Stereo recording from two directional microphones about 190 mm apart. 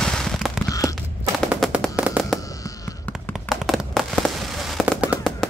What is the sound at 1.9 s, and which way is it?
Fireworks, 5° right (ahead or behind).